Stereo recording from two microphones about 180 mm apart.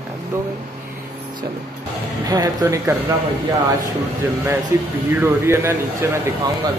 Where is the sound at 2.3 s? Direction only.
20° right (ahead or behind).